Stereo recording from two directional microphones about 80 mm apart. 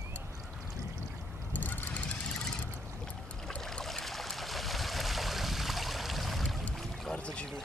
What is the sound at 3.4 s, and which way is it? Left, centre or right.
Stream, centre.